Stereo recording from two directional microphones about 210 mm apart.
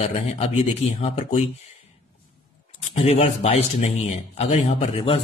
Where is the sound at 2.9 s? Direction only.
30° left (ahead or behind).